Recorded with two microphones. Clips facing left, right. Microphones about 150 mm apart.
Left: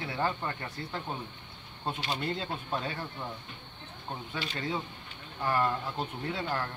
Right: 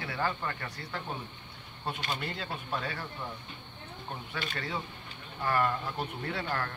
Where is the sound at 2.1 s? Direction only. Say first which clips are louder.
Left 3 dB; 25° left (ahead or behind).